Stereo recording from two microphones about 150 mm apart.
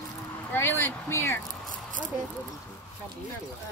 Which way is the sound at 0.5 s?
15° left (ahead or behind).